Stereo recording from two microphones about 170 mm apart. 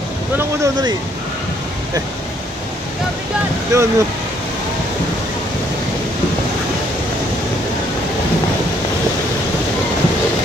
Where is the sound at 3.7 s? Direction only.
20° right (ahead or behind).